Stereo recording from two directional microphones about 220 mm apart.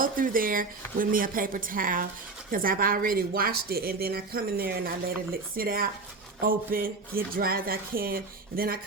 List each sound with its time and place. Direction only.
0.0 s speech: 40° right (ahead or behind)